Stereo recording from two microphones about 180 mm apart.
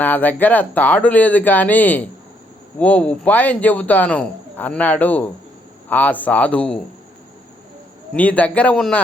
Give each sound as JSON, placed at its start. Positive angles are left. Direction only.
{"t": 0.0, "sound": "speech", "side_deg": 10}
{"t": 8.1, "sound": "speech", "side_deg": 10}